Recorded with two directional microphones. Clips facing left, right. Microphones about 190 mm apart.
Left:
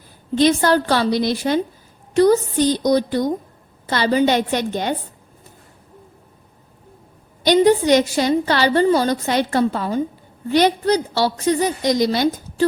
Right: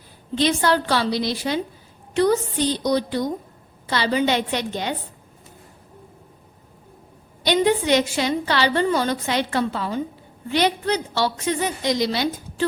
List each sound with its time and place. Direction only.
0.3 s a woman's voice: 45° left (ahead or behind)
7.4 s a woman's voice: 40° left (ahead or behind)